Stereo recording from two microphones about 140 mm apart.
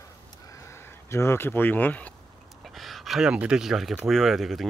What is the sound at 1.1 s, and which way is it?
Speech, 20° left (ahead or behind).